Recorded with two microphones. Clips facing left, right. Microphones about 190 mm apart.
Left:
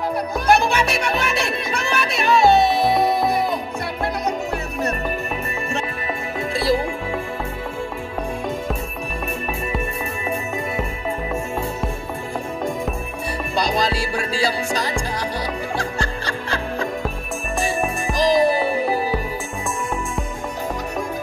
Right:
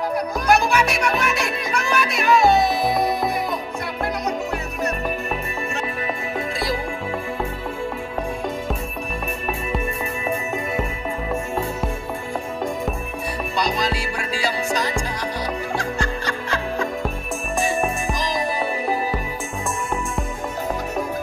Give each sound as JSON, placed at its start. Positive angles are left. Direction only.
{"t": 0.5, "sound": "music", "side_deg": 30}
{"t": 13.6, "sound": "music", "side_deg": 30}
{"t": 18.1, "sound": "music", "side_deg": 30}